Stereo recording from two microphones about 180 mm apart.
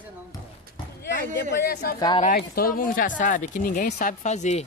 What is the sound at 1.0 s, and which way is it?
Speech, 65° left (ahead or behind).